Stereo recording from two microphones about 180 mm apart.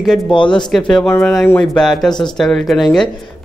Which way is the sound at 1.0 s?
10° left (ahead or behind).